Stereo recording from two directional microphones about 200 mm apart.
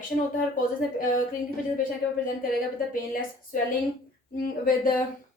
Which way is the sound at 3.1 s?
45° left (ahead or behind).